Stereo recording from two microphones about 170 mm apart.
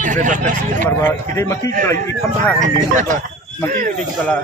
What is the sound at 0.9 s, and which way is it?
Speech, 15° left (ahead or behind).